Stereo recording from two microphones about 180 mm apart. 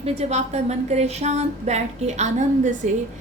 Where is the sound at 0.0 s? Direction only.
35° right (ahead or behind).